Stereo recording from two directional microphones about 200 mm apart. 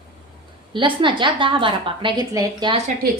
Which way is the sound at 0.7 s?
25° right (ahead or behind).